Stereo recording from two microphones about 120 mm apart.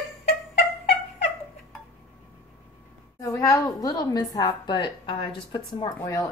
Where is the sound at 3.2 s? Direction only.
30° left (ahead or behind).